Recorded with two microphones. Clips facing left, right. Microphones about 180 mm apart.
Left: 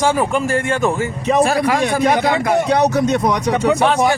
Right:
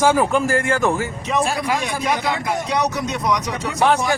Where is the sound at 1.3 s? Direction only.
60° left (ahead or behind).